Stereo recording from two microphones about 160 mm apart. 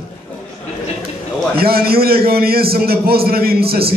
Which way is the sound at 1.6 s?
70° right (ahead or behind).